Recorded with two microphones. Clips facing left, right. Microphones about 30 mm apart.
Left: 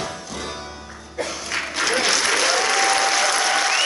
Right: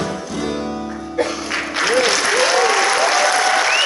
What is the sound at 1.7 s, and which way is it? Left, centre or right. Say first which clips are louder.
Applause: right 4 dB; centre.